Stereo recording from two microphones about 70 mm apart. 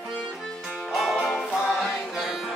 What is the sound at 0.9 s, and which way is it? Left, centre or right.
Music, centre.